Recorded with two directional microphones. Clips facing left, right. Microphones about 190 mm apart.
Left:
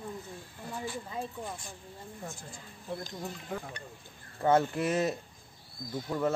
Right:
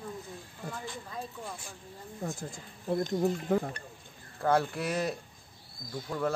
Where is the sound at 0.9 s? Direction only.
10° left (ahead or behind).